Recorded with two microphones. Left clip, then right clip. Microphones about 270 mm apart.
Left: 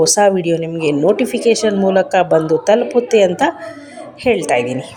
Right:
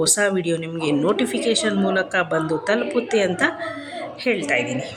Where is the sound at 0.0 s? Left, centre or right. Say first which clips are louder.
Left 8 dB; centre.